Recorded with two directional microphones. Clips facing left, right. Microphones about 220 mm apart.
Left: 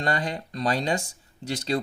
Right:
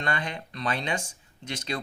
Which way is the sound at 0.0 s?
35° left (ahead or behind).